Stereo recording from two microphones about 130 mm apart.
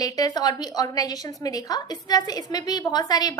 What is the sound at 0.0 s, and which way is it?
A woman's voice, 25° left (ahead or behind).